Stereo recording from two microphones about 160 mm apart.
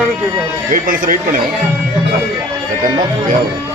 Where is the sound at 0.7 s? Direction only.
60° right (ahead or behind).